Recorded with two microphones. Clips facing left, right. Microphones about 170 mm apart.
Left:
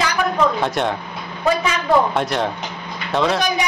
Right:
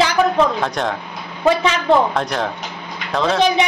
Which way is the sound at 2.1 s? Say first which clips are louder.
Left 1 dB; centre (ahead or behind).